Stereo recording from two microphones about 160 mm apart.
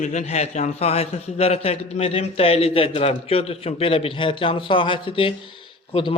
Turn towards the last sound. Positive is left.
turn(degrees=30)  # may be behind; listen again after turning